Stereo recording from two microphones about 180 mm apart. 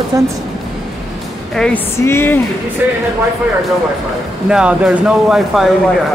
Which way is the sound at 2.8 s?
10° right (ahead or behind).